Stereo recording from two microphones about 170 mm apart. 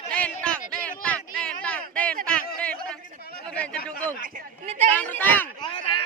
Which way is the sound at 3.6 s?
10° left (ahead or behind).